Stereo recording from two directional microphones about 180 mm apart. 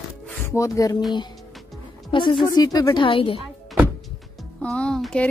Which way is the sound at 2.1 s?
25° left (ahead or behind).